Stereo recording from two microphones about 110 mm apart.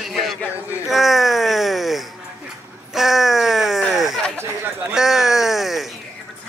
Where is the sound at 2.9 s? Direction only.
Centre (ahead or behind).